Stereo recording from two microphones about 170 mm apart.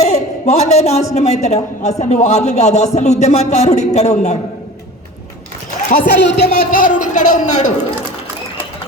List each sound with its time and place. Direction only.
0.0 s a sound: 40° left (ahead or behind)
1.1 s a man's voice: 40° left (ahead or behind)
6.1 s a man's voice: 75° left (ahead or behind); by 7.7 s 45° left (ahead or behind)